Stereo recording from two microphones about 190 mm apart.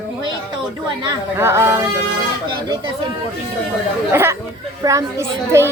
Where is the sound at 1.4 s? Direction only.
15° right (ahead or behind).